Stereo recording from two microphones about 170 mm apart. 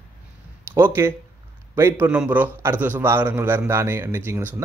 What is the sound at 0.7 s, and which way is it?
A man's voice, 15° right (ahead or behind).